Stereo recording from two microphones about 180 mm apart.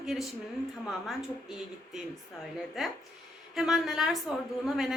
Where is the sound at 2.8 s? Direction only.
Centre (ahead or behind).